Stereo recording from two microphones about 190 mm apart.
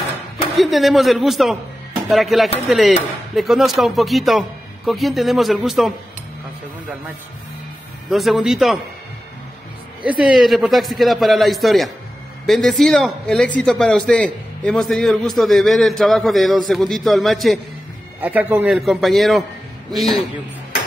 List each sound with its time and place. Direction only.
0.6 s a man's voice: centre (ahead or behind)
8.1 s a man's voice: centre (ahead or behind)
10.0 s a man's voice: 5° right (ahead or behind)